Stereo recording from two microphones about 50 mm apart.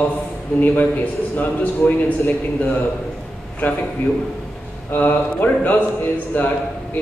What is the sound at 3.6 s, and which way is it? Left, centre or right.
Speech, left.